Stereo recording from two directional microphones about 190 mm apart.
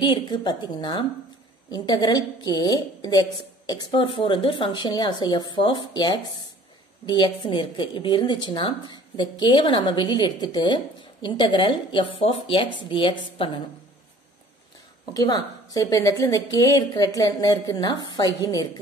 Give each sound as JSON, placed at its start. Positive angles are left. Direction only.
{"t": 0.0, "sound": "a woman's voice", "side_deg": 25}
{"t": 15.1, "sound": "a woman's voice", "side_deg": 20}